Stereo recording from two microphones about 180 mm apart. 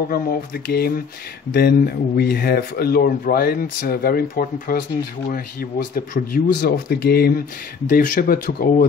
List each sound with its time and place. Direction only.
0.1 s speech: 55° left (ahead or behind)
7.9 s speech: 50° left (ahead or behind)